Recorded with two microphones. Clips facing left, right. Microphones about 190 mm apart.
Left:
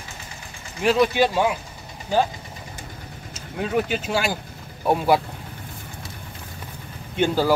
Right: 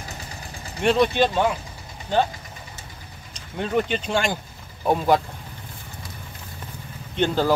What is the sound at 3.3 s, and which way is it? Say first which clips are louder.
Speech: even; 5° left (ahead or behind).